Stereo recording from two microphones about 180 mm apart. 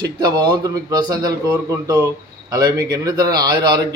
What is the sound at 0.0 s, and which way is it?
Speech, 25° right (ahead or behind).